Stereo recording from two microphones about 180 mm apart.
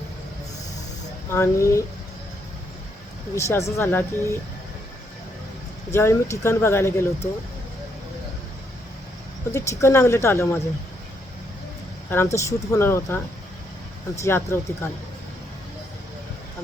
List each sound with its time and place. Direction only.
1.3 s speech: 15° left (ahead or behind)
3.3 s speech: 15° left (ahead or behind)
5.9 s speech: 15° left (ahead or behind)
9.5 s speech: 15° left (ahead or behind)
12.1 s speech: 15° left (ahead or behind)
14.2 s speech: 15° left (ahead or behind)